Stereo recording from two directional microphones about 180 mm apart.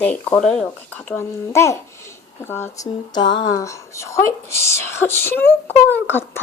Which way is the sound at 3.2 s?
90° left.